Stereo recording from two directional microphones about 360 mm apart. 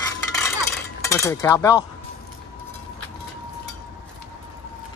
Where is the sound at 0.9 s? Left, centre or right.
Centre.